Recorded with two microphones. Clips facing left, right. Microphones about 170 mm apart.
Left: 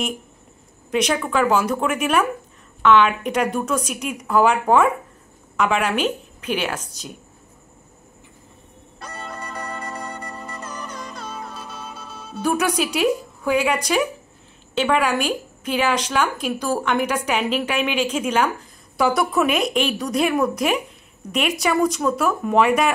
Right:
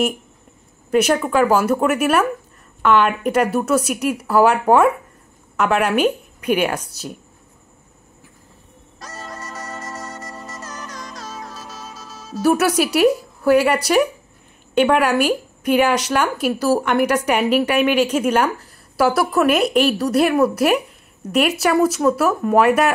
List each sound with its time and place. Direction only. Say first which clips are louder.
0.9 s a woman's voice: right 4 dB; 5° right (ahead or behind)
9.5 s music: left 2 dB; 5° right (ahead or behind)
12.3 s speech: right 5 dB; 5° right (ahead or behind)
14.8 s a woman's voice: right 4 dB; 10° right (ahead or behind)